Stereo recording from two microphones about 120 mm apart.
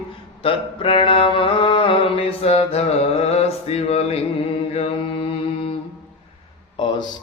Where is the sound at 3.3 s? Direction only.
60° left (ahead or behind).